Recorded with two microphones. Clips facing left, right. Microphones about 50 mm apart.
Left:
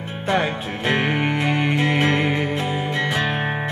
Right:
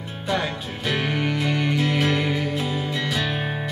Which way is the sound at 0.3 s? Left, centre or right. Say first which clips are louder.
Left 4 dB; left.